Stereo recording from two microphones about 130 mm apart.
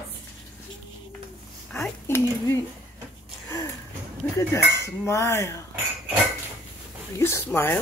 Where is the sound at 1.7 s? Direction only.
15° left (ahead or behind).